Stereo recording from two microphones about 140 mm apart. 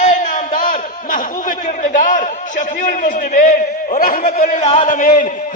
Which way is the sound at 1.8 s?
70° left (ahead or behind).